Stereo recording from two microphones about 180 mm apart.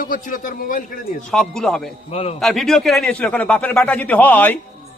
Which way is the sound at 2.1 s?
35° left (ahead or behind).